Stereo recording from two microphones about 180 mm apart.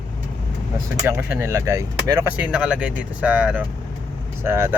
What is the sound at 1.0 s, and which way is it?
Speech, 15° right (ahead or behind).